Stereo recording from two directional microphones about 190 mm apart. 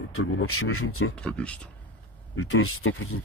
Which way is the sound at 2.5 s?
90° left.